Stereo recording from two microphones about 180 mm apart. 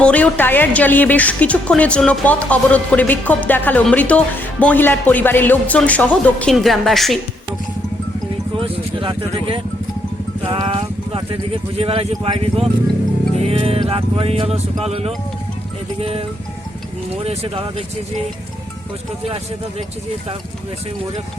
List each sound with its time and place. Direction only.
0.0 s a woman's voice: 10° left (ahead or behind)
8.5 s vehicle: 30° right (ahead or behind)
10.5 s speech: 30° right (ahead or behind)
17.2 s speech: 35° right (ahead or behind)